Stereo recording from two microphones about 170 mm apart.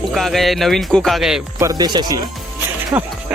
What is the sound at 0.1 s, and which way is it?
Speech, centre (ahead or behind).